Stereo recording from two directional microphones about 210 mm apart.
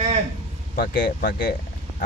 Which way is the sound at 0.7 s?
50° left (ahead or behind).